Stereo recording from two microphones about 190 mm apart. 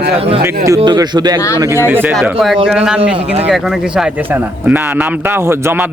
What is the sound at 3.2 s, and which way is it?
Speech, 35° right (ahead or behind).